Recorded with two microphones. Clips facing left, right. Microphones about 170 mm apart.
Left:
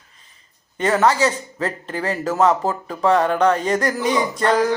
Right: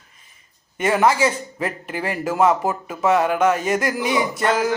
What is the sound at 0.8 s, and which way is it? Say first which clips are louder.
A man's voice: even; 10° right (ahead or behind).